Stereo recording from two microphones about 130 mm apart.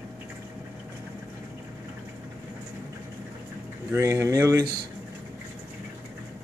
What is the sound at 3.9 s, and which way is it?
Speech, 20° right (ahead or behind).